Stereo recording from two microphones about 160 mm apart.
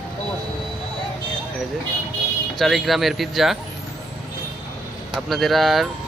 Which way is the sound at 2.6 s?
Centre (ahead or behind).